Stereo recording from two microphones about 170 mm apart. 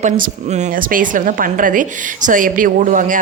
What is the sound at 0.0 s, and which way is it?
A woman's voice, 45° right (ahead or behind).